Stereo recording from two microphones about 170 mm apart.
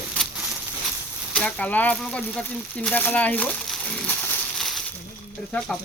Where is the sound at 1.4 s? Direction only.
10° left (ahead or behind).